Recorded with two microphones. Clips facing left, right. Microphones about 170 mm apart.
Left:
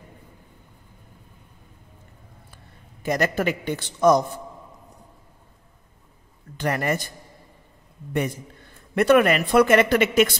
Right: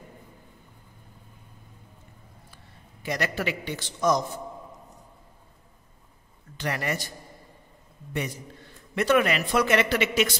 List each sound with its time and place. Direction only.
2.5 s a man's voice: 50° left (ahead or behind)
6.5 s speech: 50° left (ahead or behind)
8.1 s speech: 50° left (ahead or behind)